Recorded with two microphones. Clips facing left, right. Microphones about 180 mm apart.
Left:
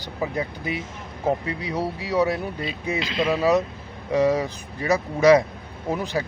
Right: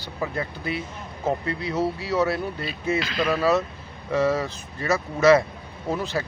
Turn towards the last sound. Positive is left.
turn(degrees=15)  # may be behind; listen again after turning